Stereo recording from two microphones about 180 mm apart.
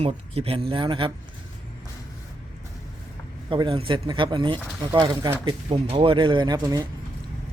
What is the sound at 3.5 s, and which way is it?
Speech, 25° right (ahead or behind).